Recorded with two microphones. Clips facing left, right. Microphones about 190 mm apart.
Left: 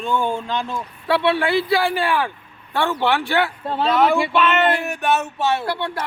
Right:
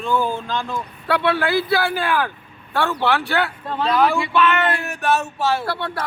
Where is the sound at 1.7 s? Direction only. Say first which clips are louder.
Left 1 dB; 15° left (ahead or behind).